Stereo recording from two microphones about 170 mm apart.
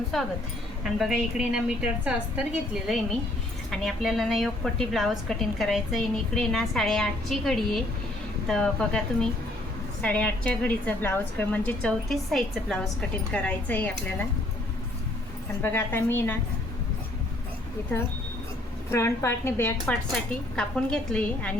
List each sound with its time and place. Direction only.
0.1 s a woman's voice: centre (ahead or behind)
15.6 s a woman's voice: 15° left (ahead or behind)
18.9 s a woman's voice: 15° left (ahead or behind)
19.8 s a woman's voice: centre (ahead or behind)